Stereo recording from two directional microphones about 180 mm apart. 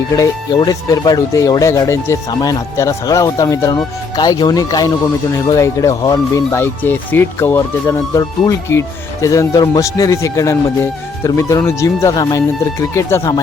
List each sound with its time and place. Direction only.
0.2 s speech: 20° left (ahead or behind)